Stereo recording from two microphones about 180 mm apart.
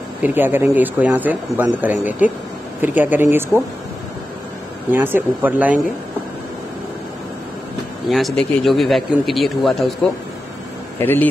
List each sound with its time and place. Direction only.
0.2 s speech: 10° right (ahead or behind)
4.9 s speech: 10° right (ahead or behind)
8.1 s speech: centre (ahead or behind)
11.0 s speech: 10° left (ahead or behind)